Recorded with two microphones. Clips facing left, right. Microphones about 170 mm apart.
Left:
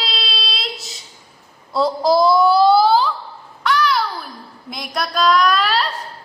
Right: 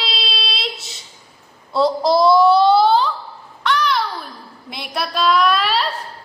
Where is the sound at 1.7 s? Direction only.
Centre (ahead or behind).